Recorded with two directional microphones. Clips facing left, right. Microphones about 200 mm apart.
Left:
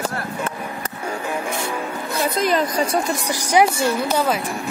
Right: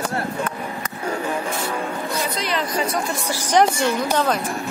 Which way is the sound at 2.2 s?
50° left (ahead or behind).